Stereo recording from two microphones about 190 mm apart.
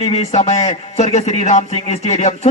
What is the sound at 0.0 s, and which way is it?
Speech, 35° left (ahead or behind).